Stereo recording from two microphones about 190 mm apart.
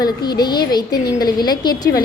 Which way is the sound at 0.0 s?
20° left (ahead or behind).